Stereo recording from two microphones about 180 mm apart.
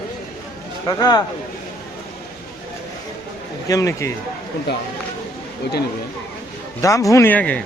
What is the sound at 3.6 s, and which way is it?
Speech, 15° left (ahead or behind).